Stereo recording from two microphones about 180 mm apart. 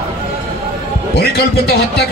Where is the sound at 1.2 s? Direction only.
65° left (ahead or behind).